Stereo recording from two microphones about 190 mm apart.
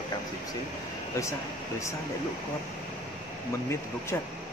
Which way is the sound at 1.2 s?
15° left (ahead or behind).